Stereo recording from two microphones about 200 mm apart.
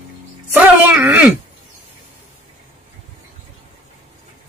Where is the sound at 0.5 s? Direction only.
10° right (ahead or behind).